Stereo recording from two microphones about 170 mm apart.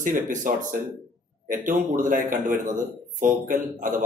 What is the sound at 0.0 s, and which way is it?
Speech, 50° right (ahead or behind).